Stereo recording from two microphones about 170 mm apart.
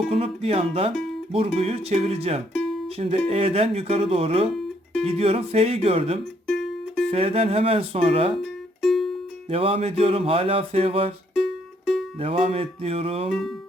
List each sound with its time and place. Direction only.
0.1 s speech: 35° right (ahead or behind)
6.5 s music: centre (ahead or behind)
7.1 s speech: 35° right (ahead or behind)
8.8 s music: centre (ahead or behind)
9.5 s speech: 35° right (ahead or behind)
11.3 s music: centre (ahead or behind)
12.2 s speech: 35° right (ahead or behind)